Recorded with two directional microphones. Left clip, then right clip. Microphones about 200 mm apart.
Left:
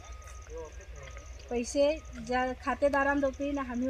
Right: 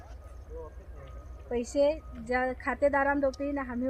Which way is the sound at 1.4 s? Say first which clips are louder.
Right 1 dB; 20° right (ahead or behind).